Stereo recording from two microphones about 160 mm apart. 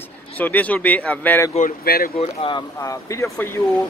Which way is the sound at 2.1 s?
35° left (ahead or behind).